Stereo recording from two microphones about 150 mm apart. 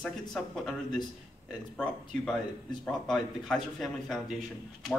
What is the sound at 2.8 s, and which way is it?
Speech, 5° left (ahead or behind).